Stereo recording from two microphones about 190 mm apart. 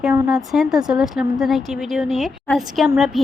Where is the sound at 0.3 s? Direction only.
Centre (ahead or behind).